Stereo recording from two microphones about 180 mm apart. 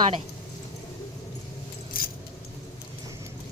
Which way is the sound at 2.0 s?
55° left (ahead or behind).